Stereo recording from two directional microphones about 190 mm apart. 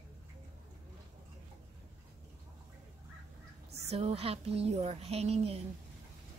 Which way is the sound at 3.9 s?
35° right (ahead or behind).